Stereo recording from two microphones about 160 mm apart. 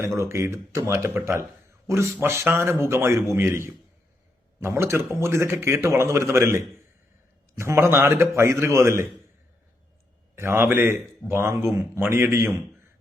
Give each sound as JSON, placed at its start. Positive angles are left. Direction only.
{"t": 0.0, "sound": "a man's voice", "side_deg": -15}
{"t": 10.3, "sound": "a man's voice", "side_deg": -15}